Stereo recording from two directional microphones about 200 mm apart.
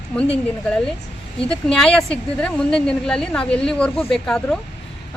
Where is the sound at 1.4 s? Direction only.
5° left (ahead or behind).